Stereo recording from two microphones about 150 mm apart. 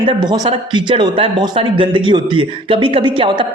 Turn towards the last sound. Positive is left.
turn(degrees=-35)  # may be behind; listen again after turning